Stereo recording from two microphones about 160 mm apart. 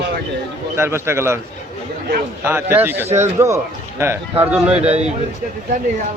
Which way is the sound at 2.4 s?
15° right (ahead or behind).